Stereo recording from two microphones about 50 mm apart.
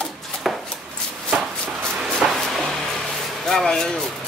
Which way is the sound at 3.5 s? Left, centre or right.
Centre.